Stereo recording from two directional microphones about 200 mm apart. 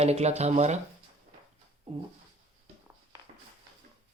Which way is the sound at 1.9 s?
30° right (ahead or behind).